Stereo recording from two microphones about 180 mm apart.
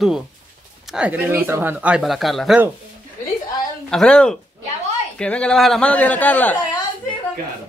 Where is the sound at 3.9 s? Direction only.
5° left (ahead or behind).